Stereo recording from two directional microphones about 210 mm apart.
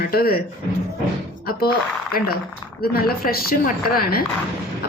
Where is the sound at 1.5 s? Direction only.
45° left (ahead or behind).